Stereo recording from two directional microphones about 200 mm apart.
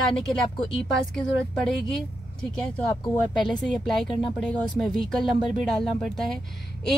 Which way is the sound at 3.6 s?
Centre (ahead or behind).